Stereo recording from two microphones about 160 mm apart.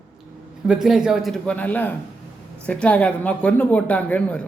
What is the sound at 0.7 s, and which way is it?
A man's voice, centre (ahead or behind).